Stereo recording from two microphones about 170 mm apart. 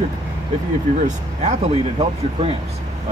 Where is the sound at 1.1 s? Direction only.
40° right (ahead or behind).